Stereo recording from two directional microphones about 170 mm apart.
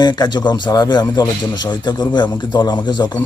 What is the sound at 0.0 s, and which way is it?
A man's voice, 25° left (ahead or behind).